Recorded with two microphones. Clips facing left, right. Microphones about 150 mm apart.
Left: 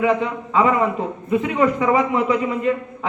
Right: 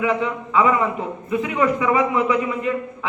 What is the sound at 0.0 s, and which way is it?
A man's voice, 40° left (ahead or behind).